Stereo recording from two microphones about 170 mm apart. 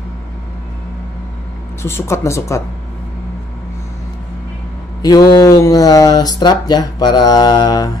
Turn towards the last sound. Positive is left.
turn(degrees=25)  # may be behind; listen again after turning